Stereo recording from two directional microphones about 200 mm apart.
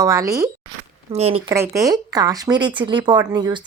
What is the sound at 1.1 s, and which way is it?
Speech, 30° right (ahead or behind).